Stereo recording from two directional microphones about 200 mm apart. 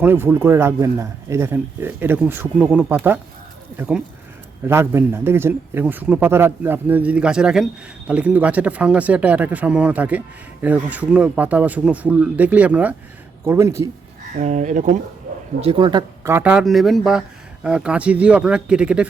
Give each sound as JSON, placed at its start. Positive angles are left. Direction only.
{"t": 0.0, "sound": "speech", "side_deg": -10}
{"t": 14.3, "sound": "speech", "side_deg": -40}
{"t": 15.6, "sound": "speech", "side_deg": -25}